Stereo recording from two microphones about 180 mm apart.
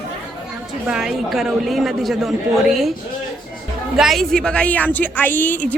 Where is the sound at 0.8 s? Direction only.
5° right (ahead or behind).